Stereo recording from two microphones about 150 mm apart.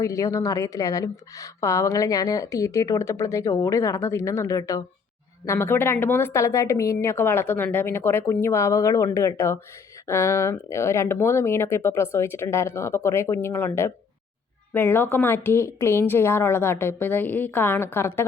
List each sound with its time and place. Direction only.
0.0 s a woman's voice: 20° left (ahead or behind)